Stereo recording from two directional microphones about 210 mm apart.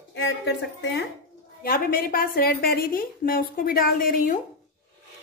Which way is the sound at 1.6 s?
45° left (ahead or behind).